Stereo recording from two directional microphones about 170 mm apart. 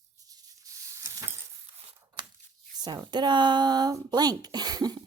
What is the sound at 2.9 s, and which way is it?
A woman's voice, 25° right (ahead or behind).